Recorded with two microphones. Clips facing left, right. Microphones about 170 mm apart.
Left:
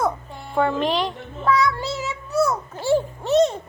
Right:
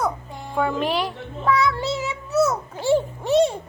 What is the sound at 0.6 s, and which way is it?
Speech, 5° right (ahead or behind).